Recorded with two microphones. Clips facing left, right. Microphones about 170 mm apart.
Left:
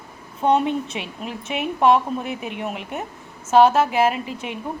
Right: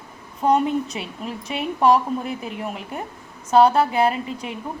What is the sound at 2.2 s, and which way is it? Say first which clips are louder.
Speech: left 1 dB; 30° right (ahead or behind).